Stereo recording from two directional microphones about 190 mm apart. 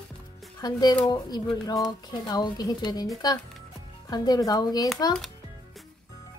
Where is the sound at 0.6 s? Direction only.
20° left (ahead or behind).